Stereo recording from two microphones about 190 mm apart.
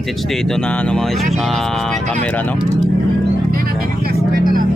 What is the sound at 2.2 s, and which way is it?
Speech, 10° left (ahead or behind).